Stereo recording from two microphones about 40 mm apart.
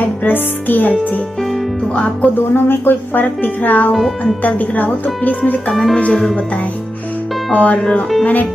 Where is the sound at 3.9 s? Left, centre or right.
Centre.